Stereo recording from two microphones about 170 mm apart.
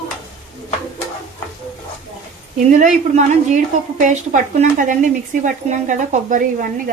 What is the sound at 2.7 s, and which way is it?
A woman's voice, 45° right (ahead or behind).